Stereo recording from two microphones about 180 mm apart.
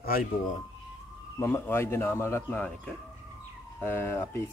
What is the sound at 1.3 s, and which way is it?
A man's voice, 15° left (ahead or behind).